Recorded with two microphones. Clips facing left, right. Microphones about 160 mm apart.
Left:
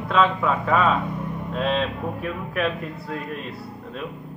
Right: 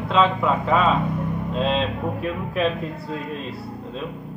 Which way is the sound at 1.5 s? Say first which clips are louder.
Even; 25° right (ahead or behind).